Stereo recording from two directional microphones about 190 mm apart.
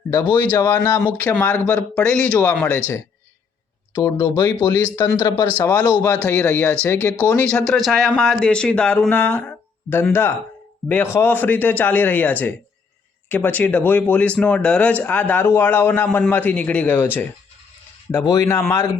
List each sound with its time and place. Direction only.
0.5 s speech: 15° left (ahead or behind)